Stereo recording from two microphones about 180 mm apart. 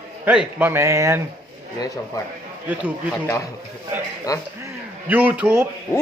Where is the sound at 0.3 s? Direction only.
10° right (ahead or behind).